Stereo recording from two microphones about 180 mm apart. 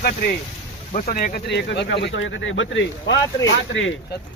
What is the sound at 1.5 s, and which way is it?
Speech, 70° left (ahead or behind).